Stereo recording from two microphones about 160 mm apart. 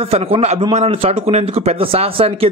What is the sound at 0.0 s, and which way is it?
A man's voice, 35° right (ahead or behind).